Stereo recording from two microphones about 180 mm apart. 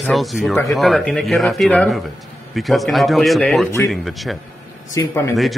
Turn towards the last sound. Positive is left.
turn(degrees=20)  # may be behind; listen again after turning